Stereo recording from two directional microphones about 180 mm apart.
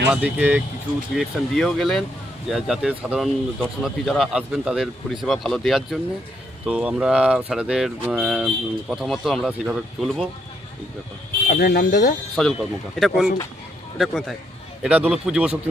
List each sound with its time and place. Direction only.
0.1 s speech: 5° right (ahead or behind)
11.4 s speech: 60° left (ahead or behind)
12.4 s speech: 5° left (ahead or behind)